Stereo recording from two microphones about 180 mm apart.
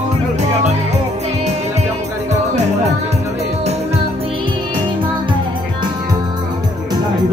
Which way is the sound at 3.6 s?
35° right (ahead or behind).